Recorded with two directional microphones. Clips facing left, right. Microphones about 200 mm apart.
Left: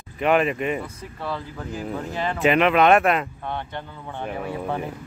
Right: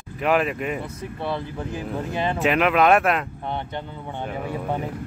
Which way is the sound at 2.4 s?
Centre (ahead or behind).